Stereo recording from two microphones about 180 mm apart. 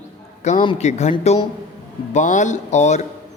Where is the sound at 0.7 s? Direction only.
40° left (ahead or behind).